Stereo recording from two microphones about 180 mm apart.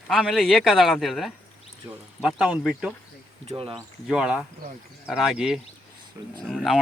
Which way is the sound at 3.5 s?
30° right (ahead or behind).